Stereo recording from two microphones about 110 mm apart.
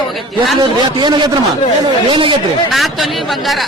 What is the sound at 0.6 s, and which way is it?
A man's voice, 45° right (ahead or behind).